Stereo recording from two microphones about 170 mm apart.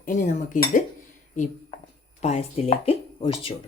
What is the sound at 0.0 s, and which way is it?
Speech, 50° left (ahead or behind).